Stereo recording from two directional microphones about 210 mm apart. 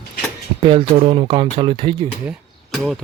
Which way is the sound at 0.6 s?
25° right (ahead or behind).